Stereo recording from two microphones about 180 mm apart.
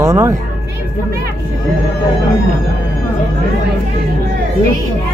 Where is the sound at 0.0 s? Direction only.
15° right (ahead or behind).